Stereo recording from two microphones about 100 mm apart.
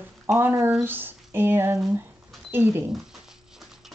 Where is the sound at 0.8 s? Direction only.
20° right (ahead or behind).